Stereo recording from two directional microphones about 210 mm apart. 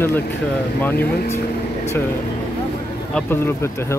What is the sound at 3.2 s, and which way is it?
Speech, 10° left (ahead or behind).